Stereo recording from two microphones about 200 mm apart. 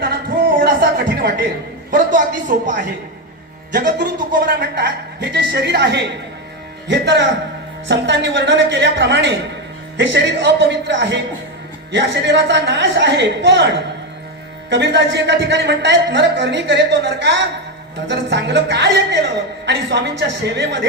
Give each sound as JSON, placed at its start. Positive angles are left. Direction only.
{"t": 0.5, "sound": "a sound", "side_deg": -50}
{"t": 1.9, "sound": "a woman's voice", "side_deg": -40}
{"t": 3.7, "sound": "a man's voice", "side_deg": -55}